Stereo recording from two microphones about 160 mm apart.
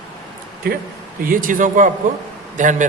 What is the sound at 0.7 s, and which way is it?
Speech, 70° right (ahead or behind).